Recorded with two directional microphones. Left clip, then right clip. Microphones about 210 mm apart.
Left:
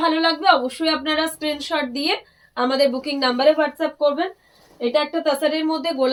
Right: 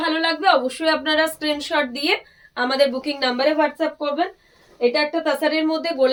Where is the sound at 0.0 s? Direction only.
15° right (ahead or behind).